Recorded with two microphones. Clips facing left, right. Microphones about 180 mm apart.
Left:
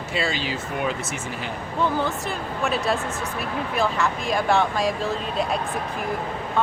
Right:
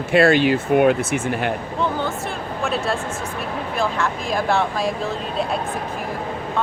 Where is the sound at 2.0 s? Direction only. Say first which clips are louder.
Right 1 dB; centre (ahead or behind).